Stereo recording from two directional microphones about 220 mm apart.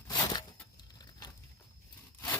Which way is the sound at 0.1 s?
20° left (ahead or behind).